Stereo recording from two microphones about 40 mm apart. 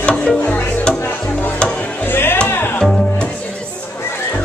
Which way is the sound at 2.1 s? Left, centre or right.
Left.